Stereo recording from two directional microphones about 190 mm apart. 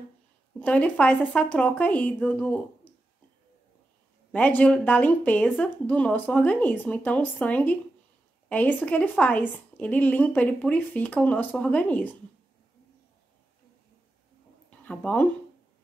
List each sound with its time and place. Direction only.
0.6 s a woman's voice: 5° left (ahead or behind)
4.3 s a woman's voice: 10° left (ahead or behind)
14.9 s a woman's voice: 5° left (ahead or behind)